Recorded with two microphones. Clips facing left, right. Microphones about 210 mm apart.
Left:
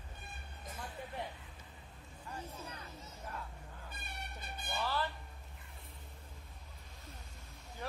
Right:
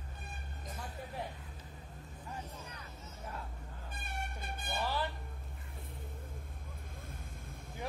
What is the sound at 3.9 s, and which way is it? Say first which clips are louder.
Music: right 7 dB; 50° right (ahead or behind).